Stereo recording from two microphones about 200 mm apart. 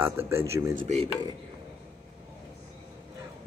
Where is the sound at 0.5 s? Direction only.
15° right (ahead or behind).